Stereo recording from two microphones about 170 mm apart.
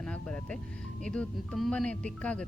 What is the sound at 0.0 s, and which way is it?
Music, 5° left (ahead or behind).